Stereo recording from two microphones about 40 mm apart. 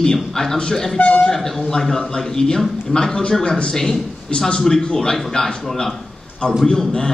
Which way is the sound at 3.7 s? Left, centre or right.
Centre.